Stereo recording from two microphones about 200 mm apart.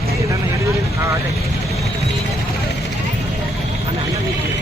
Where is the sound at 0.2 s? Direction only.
15° right (ahead or behind).